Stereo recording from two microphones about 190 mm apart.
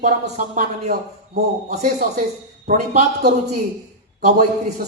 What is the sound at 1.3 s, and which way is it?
Speech, 55° right (ahead or behind).